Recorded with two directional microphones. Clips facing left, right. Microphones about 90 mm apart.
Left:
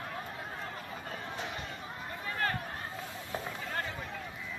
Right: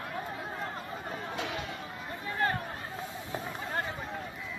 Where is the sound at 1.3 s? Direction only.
75° right (ahead or behind).